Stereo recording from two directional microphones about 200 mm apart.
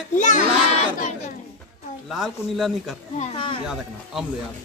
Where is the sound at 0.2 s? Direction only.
40° left (ahead or behind).